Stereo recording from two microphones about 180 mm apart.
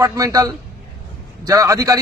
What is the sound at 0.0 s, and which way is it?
A man's voice, 15° right (ahead or behind).